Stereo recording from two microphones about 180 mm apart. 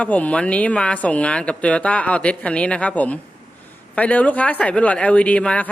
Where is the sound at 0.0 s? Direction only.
10° left (ahead or behind).